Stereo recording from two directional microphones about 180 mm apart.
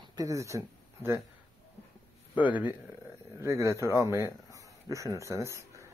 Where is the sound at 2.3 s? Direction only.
10° right (ahead or behind).